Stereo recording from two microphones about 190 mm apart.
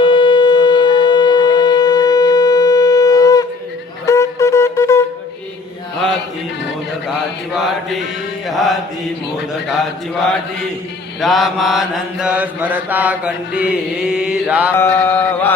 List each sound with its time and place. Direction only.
0.0 s shofar: 25° left (ahead or behind)
4.0 s wind instrument: 15° left (ahead or behind)
8.4 s mantra: centre (ahead or behind)
11.2 s mantra: centre (ahead or behind)
14.8 s chant: 10° left (ahead or behind)